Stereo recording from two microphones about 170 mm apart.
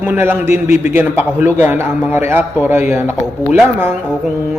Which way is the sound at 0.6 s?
50° left (ahead or behind).